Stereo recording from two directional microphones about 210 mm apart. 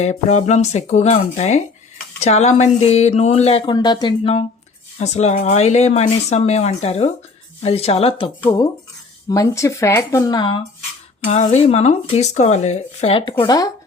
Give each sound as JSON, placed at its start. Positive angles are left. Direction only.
{"t": 0.0, "sound": "speech", "side_deg": 35}
{"t": 8.4, "sound": "speech", "side_deg": 15}
{"t": 11.3, "sound": "speech", "side_deg": 35}